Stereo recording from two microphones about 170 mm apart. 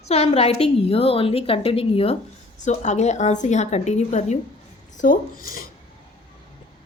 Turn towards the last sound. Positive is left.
turn(degrees=60)  # may be behind; listen again after turning